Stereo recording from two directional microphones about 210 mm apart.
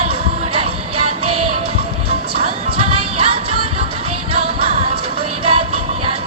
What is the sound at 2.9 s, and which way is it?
Music, 25° right (ahead or behind).